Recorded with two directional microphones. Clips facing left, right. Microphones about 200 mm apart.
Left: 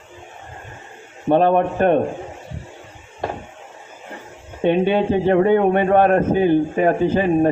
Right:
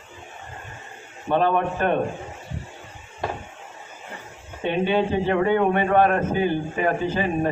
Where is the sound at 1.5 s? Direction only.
40° left (ahead or behind).